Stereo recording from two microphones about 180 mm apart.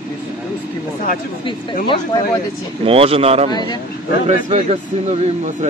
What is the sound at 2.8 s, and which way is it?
Speech, 30° right (ahead or behind).